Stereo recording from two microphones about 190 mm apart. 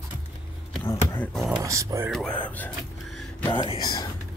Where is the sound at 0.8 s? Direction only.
10° left (ahead or behind).